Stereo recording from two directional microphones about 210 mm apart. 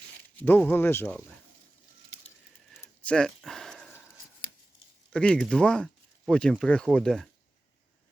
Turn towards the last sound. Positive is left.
turn(degrees=0)  # may be behind; listen again after turning